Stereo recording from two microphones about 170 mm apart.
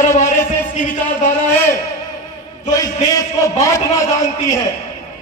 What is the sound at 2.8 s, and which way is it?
A man's voice, 20° left (ahead or behind).